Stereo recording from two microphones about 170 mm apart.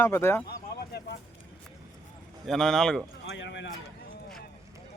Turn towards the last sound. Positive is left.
turn(degrees=90)